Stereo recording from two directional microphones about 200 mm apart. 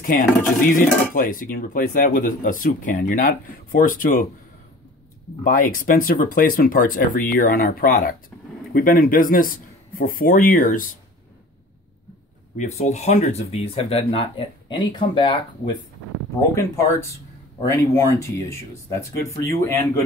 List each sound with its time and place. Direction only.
0.0 s dishes: 45° left (ahead or behind)
5.4 s dishes: 45° left (ahead or behind)
12.5 s speech: 35° left (ahead or behind); by 20.0 s 15° left (ahead or behind)